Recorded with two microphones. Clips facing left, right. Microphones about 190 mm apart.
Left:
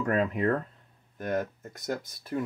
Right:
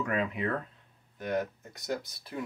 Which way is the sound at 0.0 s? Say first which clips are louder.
Left 5 dB; 40° left (ahead or behind).